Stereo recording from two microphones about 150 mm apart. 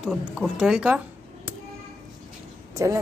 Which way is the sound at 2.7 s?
20° right (ahead or behind).